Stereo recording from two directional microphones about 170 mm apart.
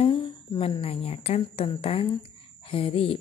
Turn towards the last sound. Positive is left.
turn(degrees=35)  # may be behind; listen again after turning